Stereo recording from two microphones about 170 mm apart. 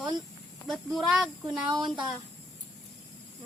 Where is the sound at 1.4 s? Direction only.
25° right (ahead or behind).